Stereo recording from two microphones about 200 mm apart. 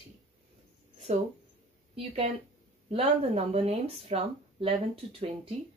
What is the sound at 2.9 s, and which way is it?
Speech, 30° right (ahead or behind).